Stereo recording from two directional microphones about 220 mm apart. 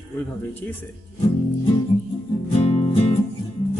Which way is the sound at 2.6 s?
30° left (ahead or behind).